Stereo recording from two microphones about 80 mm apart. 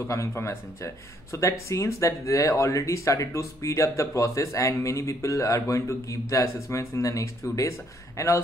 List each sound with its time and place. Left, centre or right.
0.0 s speech: left